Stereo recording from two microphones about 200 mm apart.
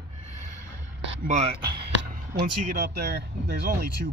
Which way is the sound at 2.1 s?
50° right (ahead or behind).